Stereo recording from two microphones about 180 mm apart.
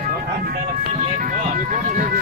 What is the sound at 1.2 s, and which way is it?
Vehicle, 50° right (ahead or behind).